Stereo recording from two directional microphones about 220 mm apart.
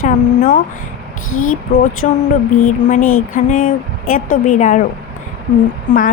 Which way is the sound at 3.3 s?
35° left (ahead or behind).